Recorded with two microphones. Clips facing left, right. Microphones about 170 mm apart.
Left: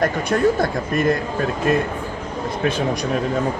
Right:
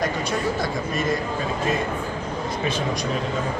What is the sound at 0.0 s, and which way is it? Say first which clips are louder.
Speech: left 7 dB; 55° left (ahead or behind).